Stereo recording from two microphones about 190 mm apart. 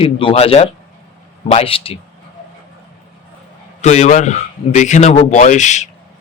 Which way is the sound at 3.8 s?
40° left (ahead or behind).